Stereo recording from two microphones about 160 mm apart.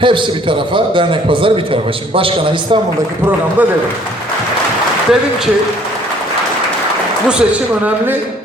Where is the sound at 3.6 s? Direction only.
10° right (ahead or behind).